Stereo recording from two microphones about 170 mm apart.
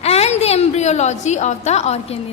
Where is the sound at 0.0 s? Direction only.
40° left (ahead or behind).